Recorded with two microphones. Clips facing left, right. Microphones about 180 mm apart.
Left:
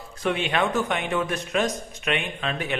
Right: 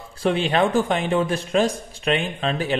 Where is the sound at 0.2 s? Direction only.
30° right (ahead or behind).